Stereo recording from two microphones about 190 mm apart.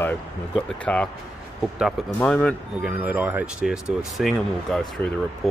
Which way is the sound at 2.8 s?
10° right (ahead or behind).